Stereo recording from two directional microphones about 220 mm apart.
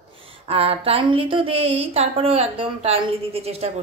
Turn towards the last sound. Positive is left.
turn(degrees=-30)  # may be behind; listen again after turning